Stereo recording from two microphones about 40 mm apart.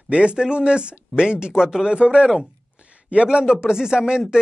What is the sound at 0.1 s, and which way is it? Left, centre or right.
Speech, right.